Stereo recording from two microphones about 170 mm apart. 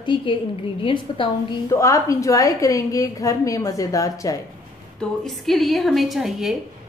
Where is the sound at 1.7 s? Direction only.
20° left (ahead or behind).